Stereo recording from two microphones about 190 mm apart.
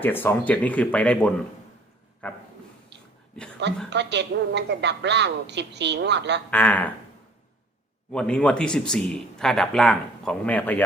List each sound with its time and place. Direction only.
0.0 s speech: 10° left (ahead or behind)
2.9 s a sound: 65° right (ahead or behind)
3.8 s a woman's voice: 65° right (ahead or behind)
6.5 s speech: 10° left (ahead or behind)
8.1 s speech: 5° left (ahead or behind)